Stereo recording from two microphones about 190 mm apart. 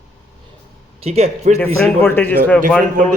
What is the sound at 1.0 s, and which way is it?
Speech, 35° right (ahead or behind).